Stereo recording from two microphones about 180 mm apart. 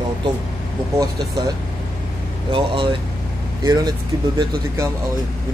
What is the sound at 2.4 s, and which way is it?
Speech, 30° right (ahead or behind).